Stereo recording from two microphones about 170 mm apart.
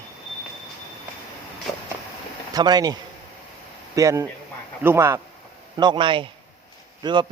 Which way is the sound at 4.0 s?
20° right (ahead or behind).